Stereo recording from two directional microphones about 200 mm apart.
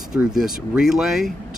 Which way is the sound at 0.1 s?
5° right (ahead or behind).